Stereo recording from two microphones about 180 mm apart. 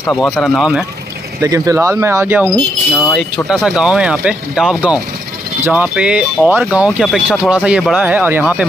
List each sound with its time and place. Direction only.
0.0 s speech: 10° left (ahead or behind)
0.6 s speech: centre (ahead or behind)
1.4 s speech: 20° right (ahead or behind)
2.5 s speech: centre (ahead or behind)